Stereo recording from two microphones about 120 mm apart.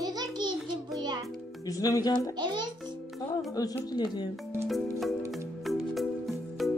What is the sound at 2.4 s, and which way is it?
Music, 35° right (ahead or behind).